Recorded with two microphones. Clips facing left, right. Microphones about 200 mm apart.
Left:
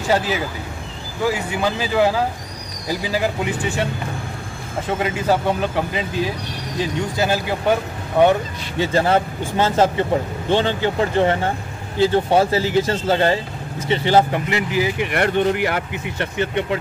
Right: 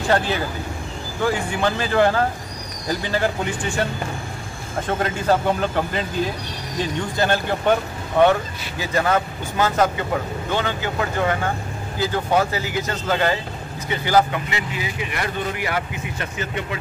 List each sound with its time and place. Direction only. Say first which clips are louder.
0.0 s speech: left 1 dB; 10° left (ahead or behind)
4.8 s speech: left 1 dB; 5° left (ahead or behind)
8.7 s speech: left 3 dB; 30° left (ahead or behind)
15.0 s speech: left 8 dB; 65° left (ahead or behind)